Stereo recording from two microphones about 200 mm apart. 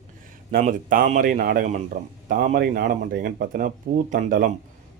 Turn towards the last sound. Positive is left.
turn(degrees=-40)  # may be behind; listen again after turning